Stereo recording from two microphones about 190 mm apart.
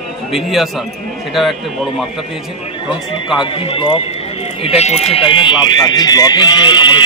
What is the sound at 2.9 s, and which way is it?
Speech, 25° left (ahead or behind).